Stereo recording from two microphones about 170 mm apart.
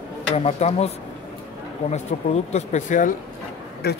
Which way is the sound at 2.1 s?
40° left (ahead or behind).